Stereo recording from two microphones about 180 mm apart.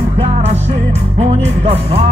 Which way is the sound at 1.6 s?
35° right (ahead or behind).